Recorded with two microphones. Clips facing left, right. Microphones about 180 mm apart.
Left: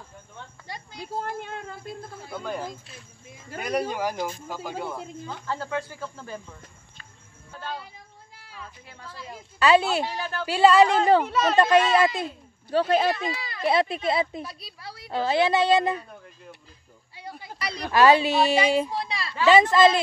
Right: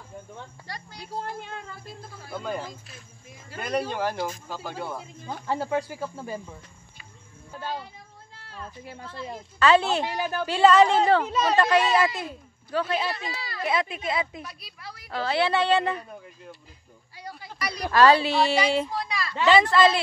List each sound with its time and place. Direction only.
0.9 s a child's voice: 50° left (ahead or behind)
2.3 s speech: centre (ahead or behind)
5.2 s speech: 15° right (ahead or behind)
8.4 s a sound: 10° left (ahead or behind)
9.6 s speech: 10° left (ahead or behind)
10.0 s speech: 15° right (ahead or behind)
10.4 s speech: 10° left (ahead or behind)
12.7 s a child's voice: 40° left (ahead or behind)
13.7 s speech: 35° left (ahead or behind)
15.1 s speech: 15° left (ahead or behind)
17.2 s a sound: 25° left (ahead or behind)
17.9 s speech: 15° left (ahead or behind)
18.9 s a child's voice: 30° left (ahead or behind)
19.4 s speech: 15° left (ahead or behind)